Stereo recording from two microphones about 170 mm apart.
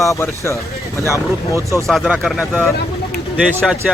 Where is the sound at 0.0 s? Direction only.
15° left (ahead or behind).